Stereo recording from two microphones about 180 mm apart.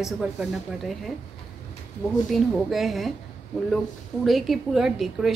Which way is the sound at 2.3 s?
Centre (ahead or behind).